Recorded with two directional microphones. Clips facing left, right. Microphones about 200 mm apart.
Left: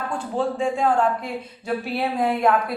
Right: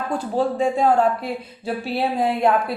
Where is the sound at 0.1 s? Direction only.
40° right (ahead or behind).